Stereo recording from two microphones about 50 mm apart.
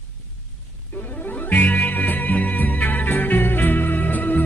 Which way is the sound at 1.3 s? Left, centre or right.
Left.